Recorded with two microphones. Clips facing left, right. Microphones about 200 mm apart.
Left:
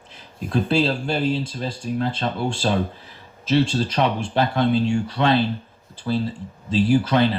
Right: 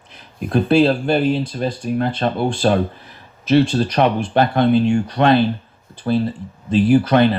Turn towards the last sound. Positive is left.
turn(degrees=-60)  # may be behind; listen again after turning